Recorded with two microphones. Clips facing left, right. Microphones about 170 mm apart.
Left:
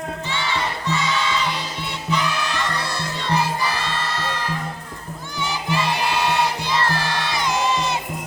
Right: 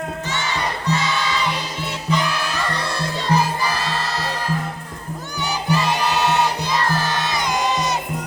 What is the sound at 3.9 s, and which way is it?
Music, 40° right (ahead or behind).